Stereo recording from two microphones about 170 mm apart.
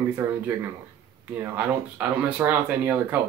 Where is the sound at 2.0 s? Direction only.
10° right (ahead or behind).